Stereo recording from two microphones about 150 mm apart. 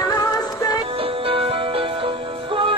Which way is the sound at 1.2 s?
40° right (ahead or behind).